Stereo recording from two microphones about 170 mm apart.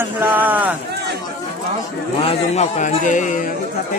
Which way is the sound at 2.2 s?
35° left (ahead or behind).